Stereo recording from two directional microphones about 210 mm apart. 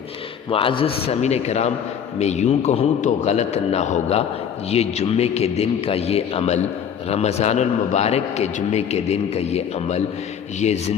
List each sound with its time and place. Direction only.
0.5 s a man's voice: 25° left (ahead or behind)